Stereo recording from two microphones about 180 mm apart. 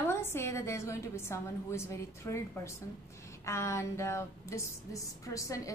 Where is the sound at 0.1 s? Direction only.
15° left (ahead or behind).